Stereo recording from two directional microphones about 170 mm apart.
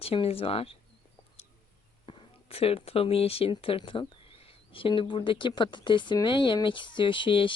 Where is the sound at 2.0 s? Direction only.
35° left (ahead or behind).